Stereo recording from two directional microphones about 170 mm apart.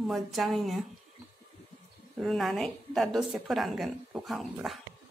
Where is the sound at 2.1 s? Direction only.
Centre (ahead or behind).